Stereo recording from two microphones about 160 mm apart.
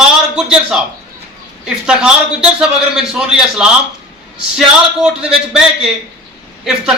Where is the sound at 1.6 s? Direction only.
5° right (ahead or behind).